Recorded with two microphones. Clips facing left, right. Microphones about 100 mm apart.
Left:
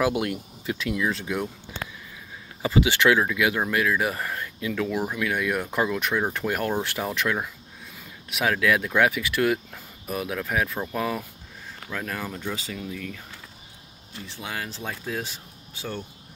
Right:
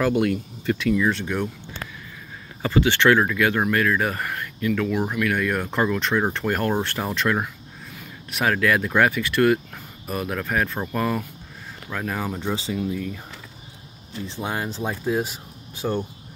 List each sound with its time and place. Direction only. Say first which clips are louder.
0.0 s speech: right 4 dB; 5° left (ahead or behind)
2.6 s speech: right 2 dB; 10° left (ahead or behind)
11.9 s speech: right 4 dB; 10° right (ahead or behind)
12.4 s speech: right 5 dB; 25° right (ahead or behind)
12.7 s speech: right 7 dB; 15° right (ahead or behind)
14.2 s speech: right 6 dB; 25° right (ahead or behind)